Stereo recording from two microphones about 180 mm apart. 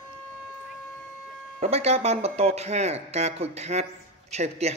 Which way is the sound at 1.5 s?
35° right (ahead or behind).